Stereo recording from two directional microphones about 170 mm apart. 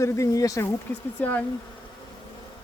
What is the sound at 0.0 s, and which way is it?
Speech, 20° left (ahead or behind).